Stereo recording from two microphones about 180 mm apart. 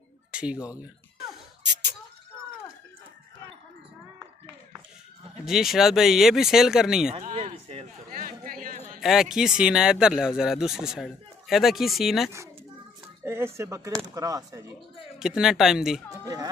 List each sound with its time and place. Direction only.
0.3 s speech: 5° right (ahead or behind)
1.6 s a sound: 70° right (ahead or behind)
5.4 s speech: centre (ahead or behind)
7.1 s a sound: 35° right (ahead or behind)
8.1 s a sound: 50° right (ahead or behind)
9.0 s speech: centre (ahead or behind)
13.2 s music: 15° right (ahead or behind)
13.6 s speech: 20° right (ahead or behind)
15.1 s speech: 5° right (ahead or behind)